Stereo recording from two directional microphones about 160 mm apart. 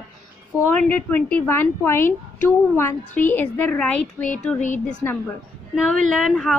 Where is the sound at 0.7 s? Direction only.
10° left (ahead or behind).